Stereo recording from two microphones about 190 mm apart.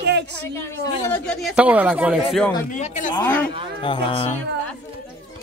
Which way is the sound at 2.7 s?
40° left (ahead or behind).